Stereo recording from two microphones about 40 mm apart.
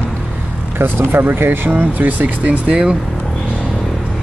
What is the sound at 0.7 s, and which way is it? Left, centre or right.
Speech, right.